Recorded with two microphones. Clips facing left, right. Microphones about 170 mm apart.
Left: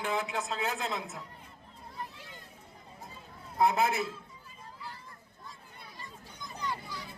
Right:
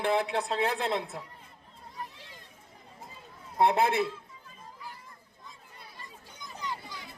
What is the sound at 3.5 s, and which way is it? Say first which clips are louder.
Speech: right 3 dB; 30° right (ahead or behind).